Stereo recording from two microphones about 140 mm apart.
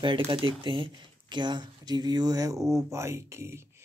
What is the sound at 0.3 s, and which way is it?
Speech, 35° right (ahead or behind).